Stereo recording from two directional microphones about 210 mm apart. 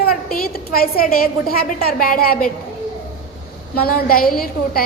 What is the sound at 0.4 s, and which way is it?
A woman's voice, 45° left (ahead or behind).